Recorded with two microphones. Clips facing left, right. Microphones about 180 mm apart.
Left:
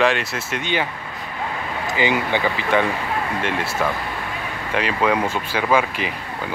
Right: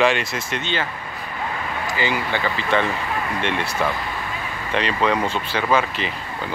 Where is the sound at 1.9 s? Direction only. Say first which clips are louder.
Left 4 dB; 20° left (ahead or behind).